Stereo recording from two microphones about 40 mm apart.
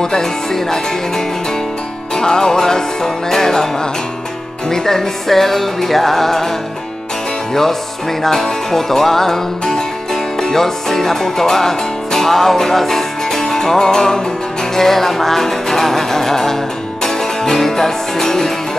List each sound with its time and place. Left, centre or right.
0.0 s music: centre
4.6 s music: centre
8.2 s music: centre